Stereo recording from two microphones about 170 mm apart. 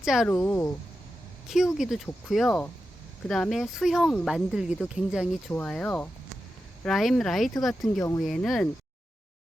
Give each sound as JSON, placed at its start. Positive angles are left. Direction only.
{"t": 0.0, "sound": "speech", "side_deg": -5}
{"t": 0.3, "sound": "speech", "side_deg": 10}
{"t": 1.5, "sound": "speech", "side_deg": -5}
{"t": 7.9, "sound": "speech", "side_deg": 20}
{"t": 8.2, "sound": "speech", "side_deg": 0}